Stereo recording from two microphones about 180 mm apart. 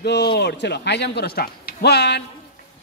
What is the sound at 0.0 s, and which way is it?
Speech, 65° left (ahead or behind).